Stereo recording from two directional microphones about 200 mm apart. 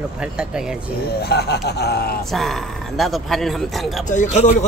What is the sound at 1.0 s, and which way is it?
Speech, 55° left (ahead or behind).